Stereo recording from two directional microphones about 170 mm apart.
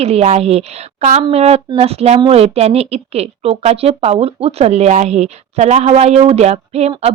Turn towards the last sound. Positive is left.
turn(degrees=-40)  # may be behind; listen again after turning